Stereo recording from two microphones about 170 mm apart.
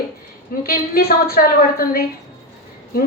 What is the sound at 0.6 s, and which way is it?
A woman's voice, 60° left (ahead or behind).